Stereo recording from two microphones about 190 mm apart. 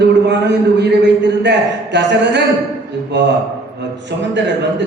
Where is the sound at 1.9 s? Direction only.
65° right (ahead or behind).